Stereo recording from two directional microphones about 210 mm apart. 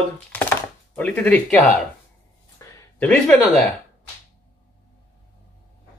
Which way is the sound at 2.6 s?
10° left (ahead or behind).